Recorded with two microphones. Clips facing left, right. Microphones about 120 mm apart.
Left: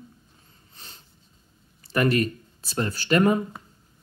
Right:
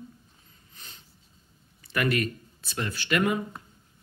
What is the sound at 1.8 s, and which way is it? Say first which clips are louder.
Speech: left 5 dB; 35° left (ahead or behind).